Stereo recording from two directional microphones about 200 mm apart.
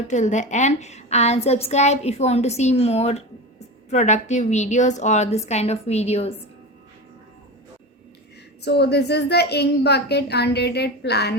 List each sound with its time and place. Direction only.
0.1 s a woman's voice: 35° left (ahead or behind)
8.6 s a woman's voice: 55° left (ahead or behind)